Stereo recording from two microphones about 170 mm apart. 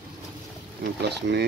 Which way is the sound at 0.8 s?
80° right.